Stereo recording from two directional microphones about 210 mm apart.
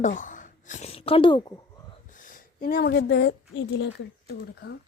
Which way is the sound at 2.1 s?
40° left (ahead or behind).